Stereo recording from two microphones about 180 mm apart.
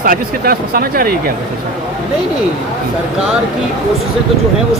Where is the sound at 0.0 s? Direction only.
55° right (ahead or behind).